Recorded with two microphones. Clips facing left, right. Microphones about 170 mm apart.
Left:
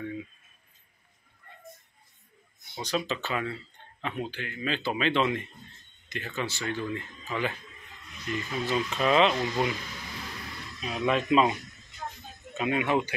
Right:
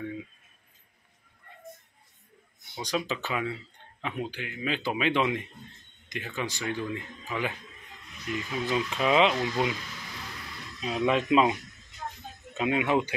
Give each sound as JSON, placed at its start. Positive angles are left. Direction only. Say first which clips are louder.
{"t": 2.7, "sound": "a man's voice", "louder": "even", "side_deg": -10}
{"t": 10.9, "sound": "a man's voice", "louder": "right 1 dB", "side_deg": -15}
{"t": 12.5, "sound": "a man's voice", "louder": "right 1 dB", "side_deg": -20}